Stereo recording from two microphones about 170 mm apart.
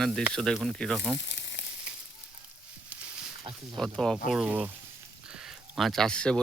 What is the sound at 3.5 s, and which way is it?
Speech, centre (ahead or behind).